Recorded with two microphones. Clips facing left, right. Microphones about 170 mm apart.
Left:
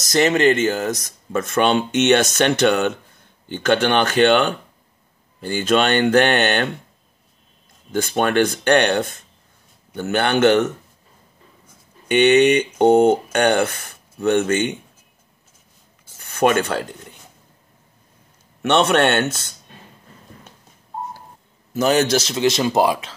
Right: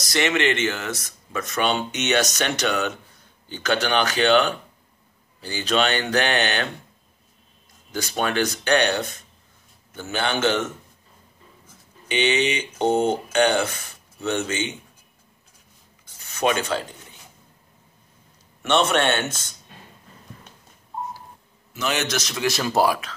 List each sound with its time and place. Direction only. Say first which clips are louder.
0.0 s speech: left 6 dB; 40° left (ahead or behind)
1.3 s speech: left 6 dB; 50° left (ahead or behind)
7.9 s speech: left 6 dB; 50° left (ahead or behind)
12.1 s speech: left 9 dB; 60° left (ahead or behind)
16.2 s speech: left 5 dB; 55° left (ahead or behind)
18.6 s speech: left 4 dB; 65° left (ahead or behind)
21.7 s a man's voice: left 9 dB; 40° left (ahead or behind); by 23.1 s 20° left (ahead or behind)